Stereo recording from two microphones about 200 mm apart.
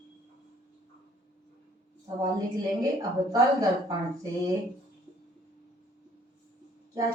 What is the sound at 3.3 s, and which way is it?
Speech, 20° right (ahead or behind).